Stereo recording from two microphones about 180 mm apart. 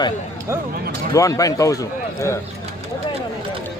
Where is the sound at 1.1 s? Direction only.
20° left (ahead or behind).